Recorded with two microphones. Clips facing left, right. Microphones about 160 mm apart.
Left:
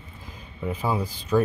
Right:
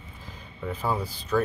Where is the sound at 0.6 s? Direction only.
10° left (ahead or behind).